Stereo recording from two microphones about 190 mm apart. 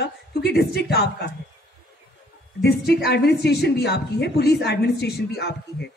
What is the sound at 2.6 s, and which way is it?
A man's voice, 60° left (ahead or behind).